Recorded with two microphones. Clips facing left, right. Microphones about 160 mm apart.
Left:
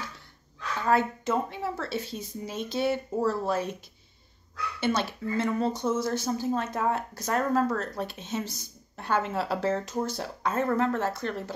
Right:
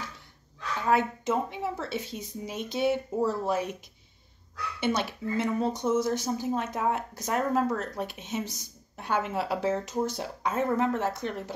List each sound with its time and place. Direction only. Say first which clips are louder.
0.8 s speech: even; 15° right (ahead or behind)
4.7 s speech: left 1 dB; 15° right (ahead or behind)